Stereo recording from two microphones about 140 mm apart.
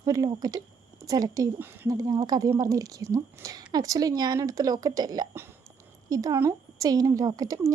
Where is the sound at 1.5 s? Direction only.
15° right (ahead or behind).